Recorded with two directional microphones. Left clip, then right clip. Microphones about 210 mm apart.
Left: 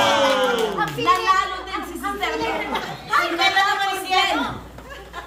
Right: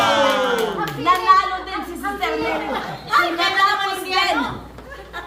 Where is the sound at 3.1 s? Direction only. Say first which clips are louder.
Right 3 dB; 5° left (ahead or behind).